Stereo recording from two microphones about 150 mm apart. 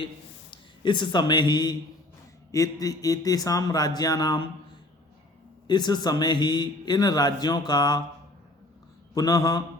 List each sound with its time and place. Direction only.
0.5 s a man's voice: 30° left (ahead or behind)
5.6 s a man's voice: 30° left (ahead or behind)
9.1 s a man's voice: 25° left (ahead or behind)